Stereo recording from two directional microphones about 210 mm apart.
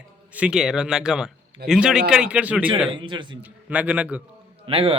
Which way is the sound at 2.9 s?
20° right (ahead or behind).